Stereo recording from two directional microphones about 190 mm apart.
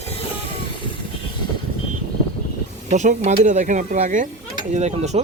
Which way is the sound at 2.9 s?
40° right (ahead or behind).